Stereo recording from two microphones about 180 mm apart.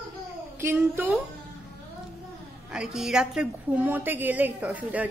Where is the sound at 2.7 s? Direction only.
5° right (ahead or behind).